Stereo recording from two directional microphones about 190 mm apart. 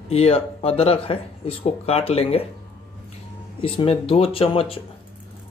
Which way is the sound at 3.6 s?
30° left (ahead or behind).